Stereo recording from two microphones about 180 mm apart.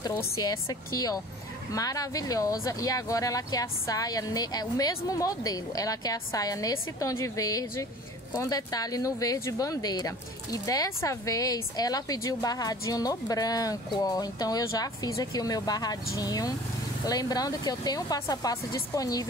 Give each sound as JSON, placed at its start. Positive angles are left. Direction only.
{"t": 0.0, "sound": "speech", "side_deg": 20}